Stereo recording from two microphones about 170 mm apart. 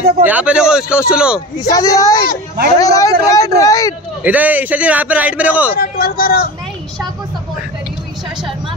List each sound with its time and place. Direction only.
0.2 s a man's voice: 10° right (ahead or behind)
1.6 s speech: 20° left (ahead or behind)
4.2 s a man's voice: 10° right (ahead or behind)
5.8 s a man's voice: 60° left (ahead or behind)